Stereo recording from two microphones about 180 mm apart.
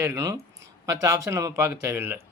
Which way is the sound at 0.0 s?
15° right (ahead or behind).